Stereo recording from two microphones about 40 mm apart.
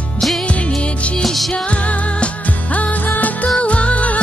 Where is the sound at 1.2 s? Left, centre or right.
Centre.